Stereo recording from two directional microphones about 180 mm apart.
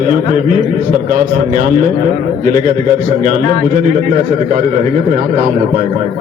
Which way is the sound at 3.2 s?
45° right (ahead or behind).